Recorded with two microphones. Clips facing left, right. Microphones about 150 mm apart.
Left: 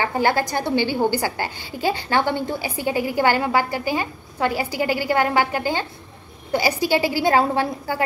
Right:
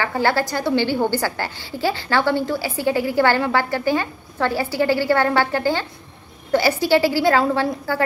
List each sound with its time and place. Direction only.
0.0 s a woman's voice: 20° left (ahead or behind)